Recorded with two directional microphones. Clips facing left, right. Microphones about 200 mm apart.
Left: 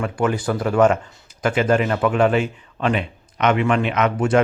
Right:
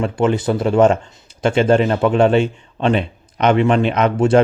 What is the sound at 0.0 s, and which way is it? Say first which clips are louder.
Speech: right 4 dB; 25° right (ahead or behind).